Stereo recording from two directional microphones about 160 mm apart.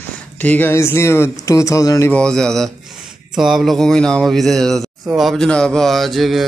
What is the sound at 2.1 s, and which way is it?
Speech, 5° left (ahead or behind).